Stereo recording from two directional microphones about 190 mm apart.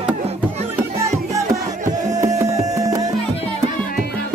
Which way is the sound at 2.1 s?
15° right (ahead or behind).